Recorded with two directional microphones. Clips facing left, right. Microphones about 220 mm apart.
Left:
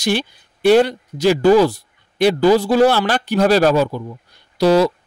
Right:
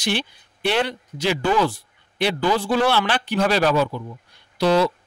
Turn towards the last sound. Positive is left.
turn(degrees=40)  # may be behind; listen again after turning